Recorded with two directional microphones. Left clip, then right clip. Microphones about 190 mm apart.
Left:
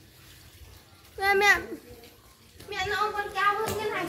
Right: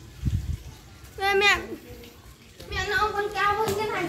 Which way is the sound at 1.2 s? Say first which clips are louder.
Right 1 dB; 45° left (ahead or behind).